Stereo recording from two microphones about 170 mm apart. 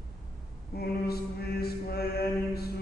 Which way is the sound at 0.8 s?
65° left (ahead or behind).